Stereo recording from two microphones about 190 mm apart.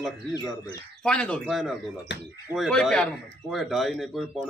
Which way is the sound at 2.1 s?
65° left (ahead or behind).